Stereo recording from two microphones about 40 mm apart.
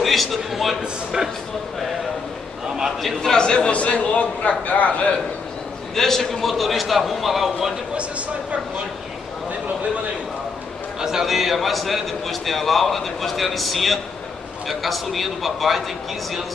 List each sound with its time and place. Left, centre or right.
0.0 s a sound: centre
0.4 s a man's voice: centre
3.2 s a man's voice: centre; by 5.1 s left
5.9 s a man's voice: centre
7.9 s speech: right
11.0 s a man's voice: centre